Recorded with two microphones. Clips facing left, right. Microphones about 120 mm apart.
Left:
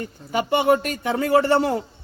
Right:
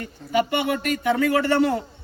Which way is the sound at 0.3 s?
35° left (ahead or behind).